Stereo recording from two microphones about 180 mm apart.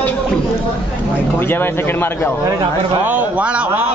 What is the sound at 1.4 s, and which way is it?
Speech, 10° left (ahead or behind).